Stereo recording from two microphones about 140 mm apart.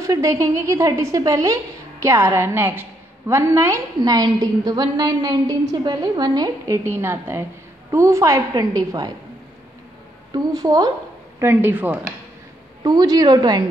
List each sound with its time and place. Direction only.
0.0 s a woman's voice: 25° right (ahead or behind)
10.3 s a woman's voice: 25° right (ahead or behind)
11.3 s speech: 15° right (ahead or behind)
12.8 s a woman's voice: 30° right (ahead or behind)